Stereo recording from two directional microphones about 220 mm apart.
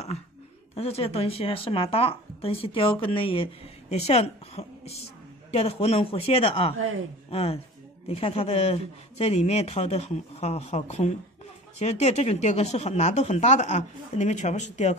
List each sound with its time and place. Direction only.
0.7 s speech: 25° left (ahead or behind)